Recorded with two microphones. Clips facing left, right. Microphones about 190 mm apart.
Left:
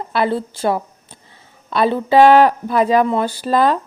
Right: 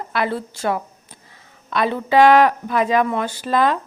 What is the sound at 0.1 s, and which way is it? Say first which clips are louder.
A woman's voice: left 4 dB; 30° left (ahead or behind).